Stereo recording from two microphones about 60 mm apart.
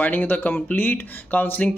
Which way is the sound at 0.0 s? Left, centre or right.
Left.